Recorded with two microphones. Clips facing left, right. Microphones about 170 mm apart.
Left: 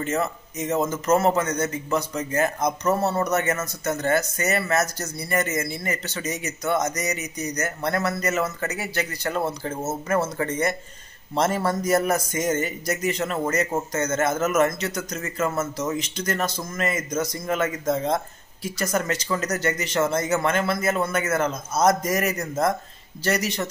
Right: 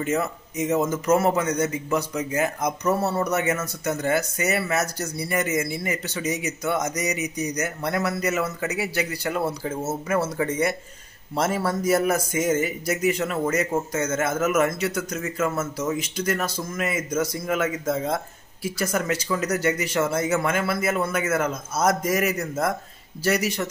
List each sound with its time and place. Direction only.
0.0 s speech: 10° right (ahead or behind)